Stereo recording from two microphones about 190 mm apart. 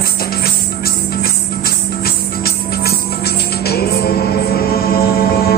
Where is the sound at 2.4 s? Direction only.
55° left (ahead or behind).